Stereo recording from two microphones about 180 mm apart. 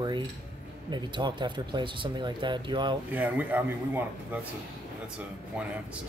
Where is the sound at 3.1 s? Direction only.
10° right (ahead or behind).